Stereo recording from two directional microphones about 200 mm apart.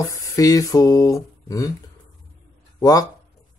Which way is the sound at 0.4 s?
15° left (ahead or behind).